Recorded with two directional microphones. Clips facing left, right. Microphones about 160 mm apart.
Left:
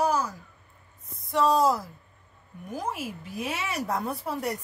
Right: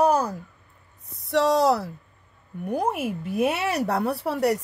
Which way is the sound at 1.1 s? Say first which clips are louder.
Right 2 dB; 75° right (ahead or behind).